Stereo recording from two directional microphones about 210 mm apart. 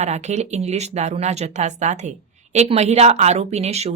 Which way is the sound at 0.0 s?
30° right (ahead or behind).